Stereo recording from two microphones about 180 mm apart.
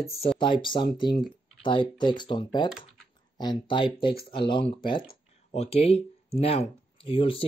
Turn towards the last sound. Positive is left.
turn(degrees=30)  # may be behind; listen again after turning